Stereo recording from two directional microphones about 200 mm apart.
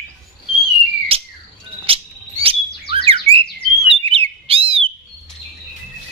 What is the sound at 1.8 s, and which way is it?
Bird, 30° right (ahead or behind).